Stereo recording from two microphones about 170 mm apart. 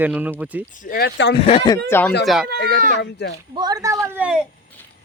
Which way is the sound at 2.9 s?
85° left.